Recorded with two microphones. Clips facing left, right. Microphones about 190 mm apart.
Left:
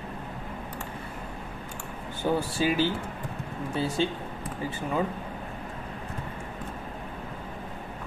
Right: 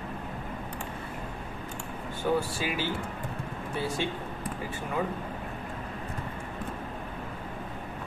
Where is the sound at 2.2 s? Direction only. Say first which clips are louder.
Left 1 dB; 30° left (ahead or behind).